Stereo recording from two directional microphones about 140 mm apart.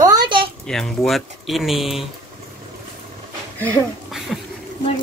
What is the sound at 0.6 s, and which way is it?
Speech, 5° left (ahead or behind).